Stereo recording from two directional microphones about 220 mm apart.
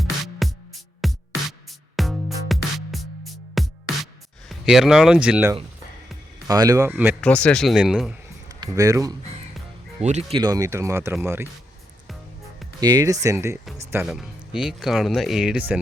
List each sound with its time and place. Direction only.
0.0 s music: centre (ahead or behind)
6.5 s speech: 15° right (ahead or behind)
7.2 s speech: 5° left (ahead or behind)
8.4 s speech: 15° right (ahead or behind)
10.0 s speech: 30° right (ahead or behind); by 11.4 s 10° right (ahead or behind)
12.8 s speech: 15° right (ahead or behind)
13.9 s speech: centre (ahead or behind)